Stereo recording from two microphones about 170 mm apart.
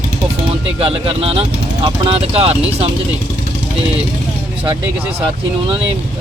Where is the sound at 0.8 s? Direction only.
35° right (ahead or behind).